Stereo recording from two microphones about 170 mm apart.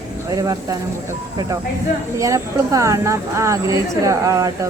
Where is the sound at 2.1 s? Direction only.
20° right (ahead or behind).